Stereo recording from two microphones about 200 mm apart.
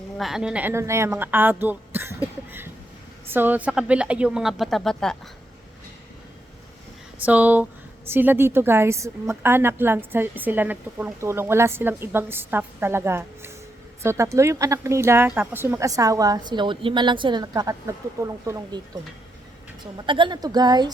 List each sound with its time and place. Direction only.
0.2 s a woman's voice: centre (ahead or behind)
7.2 s a woman's voice: 10° right (ahead or behind)
19.8 s a woman's voice: 25° right (ahead or behind)